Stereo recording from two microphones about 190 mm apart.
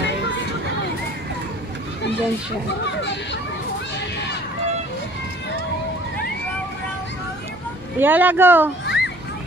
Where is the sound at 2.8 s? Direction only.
65° left (ahead or behind).